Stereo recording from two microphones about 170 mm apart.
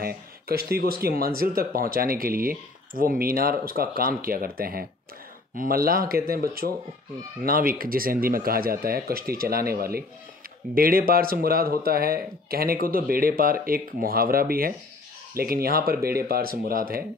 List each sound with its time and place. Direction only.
0.0 s speech: 65° right (ahead or behind)